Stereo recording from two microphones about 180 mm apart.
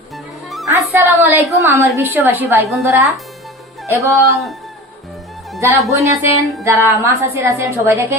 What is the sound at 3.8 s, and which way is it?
Music, 15° right (ahead or behind).